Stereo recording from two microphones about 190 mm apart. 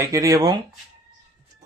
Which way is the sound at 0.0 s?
15° right (ahead or behind).